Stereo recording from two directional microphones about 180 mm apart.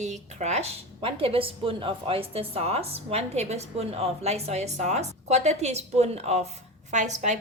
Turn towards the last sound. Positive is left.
turn(degrees=-40)  # may be behind; listen again after turning